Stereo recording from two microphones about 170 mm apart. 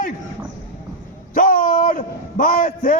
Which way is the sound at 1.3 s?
55° left (ahead or behind).